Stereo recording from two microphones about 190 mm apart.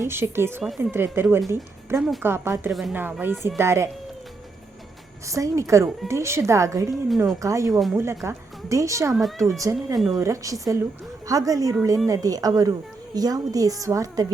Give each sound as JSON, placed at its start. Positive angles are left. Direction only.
{"t": 0.0, "sound": "a woman's voice", "side_deg": -15}
{"t": 5.2, "sound": "a woman's voice", "side_deg": -15}
{"t": 7.7, "sound": "a woman's voice", "side_deg": 0}
{"t": 8.2, "sound": "a woman's voice", "side_deg": -15}